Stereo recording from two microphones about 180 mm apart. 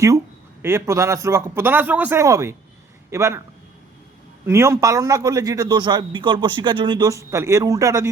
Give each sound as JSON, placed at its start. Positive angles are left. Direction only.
{"t": 0.6, "sound": "a man's voice", "side_deg": -15}
{"t": 4.4, "sound": "a man's voice", "side_deg": -15}